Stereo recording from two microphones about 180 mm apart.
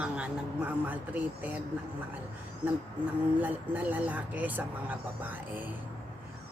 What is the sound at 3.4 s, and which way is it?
A woman's voice, 10° right (ahead or behind).